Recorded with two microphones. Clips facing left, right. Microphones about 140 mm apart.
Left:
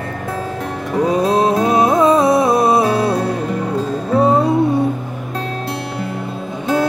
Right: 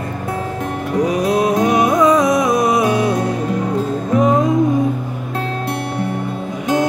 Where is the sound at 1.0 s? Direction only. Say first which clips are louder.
Left 2 dB; 30° left (ahead or behind).